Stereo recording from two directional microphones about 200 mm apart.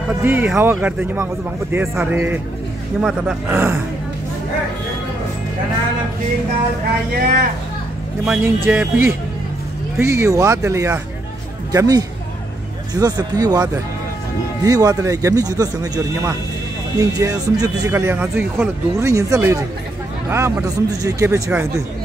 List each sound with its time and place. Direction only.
0.2 s speech: 10° right (ahead or behind)
7.2 s speech: 45° right (ahead or behind)
8.3 s speech: 10° right (ahead or behind)